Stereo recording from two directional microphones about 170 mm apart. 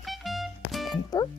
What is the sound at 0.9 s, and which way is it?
Music, 25° left (ahead or behind).